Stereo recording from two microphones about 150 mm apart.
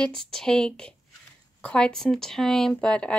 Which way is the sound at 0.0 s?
5° left (ahead or behind).